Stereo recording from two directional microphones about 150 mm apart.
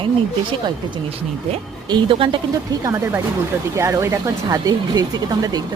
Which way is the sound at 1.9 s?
35° right (ahead or behind).